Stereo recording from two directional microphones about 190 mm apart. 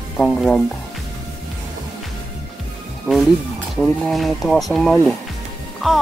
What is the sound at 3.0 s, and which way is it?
A woman's voice, centre (ahead or behind).